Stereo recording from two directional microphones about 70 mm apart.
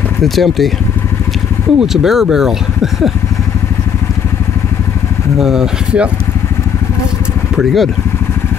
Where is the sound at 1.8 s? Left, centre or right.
Centre.